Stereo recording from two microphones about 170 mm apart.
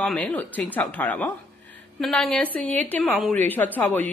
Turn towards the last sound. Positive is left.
turn(degrees=10)  # may be behind; listen again after turning